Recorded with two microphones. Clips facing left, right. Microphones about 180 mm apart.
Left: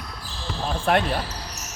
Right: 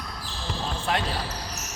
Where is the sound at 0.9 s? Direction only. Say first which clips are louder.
Left 7 dB; 55° left (ahead or behind).